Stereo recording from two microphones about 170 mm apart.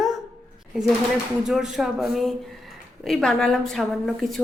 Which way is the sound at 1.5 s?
Centre (ahead or behind).